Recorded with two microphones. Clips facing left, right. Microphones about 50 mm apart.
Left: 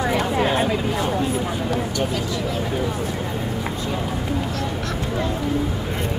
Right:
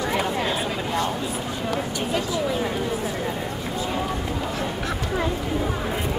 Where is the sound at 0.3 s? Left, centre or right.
Centre.